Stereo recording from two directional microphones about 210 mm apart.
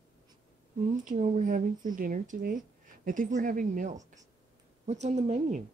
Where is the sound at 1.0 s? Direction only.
35° right (ahead or behind).